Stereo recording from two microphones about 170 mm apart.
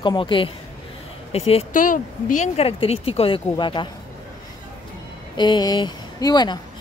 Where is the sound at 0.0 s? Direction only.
30° left (ahead or behind).